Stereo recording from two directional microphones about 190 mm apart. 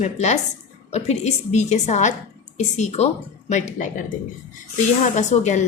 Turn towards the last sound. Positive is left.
turn(degrees=40)  # may be behind; listen again after turning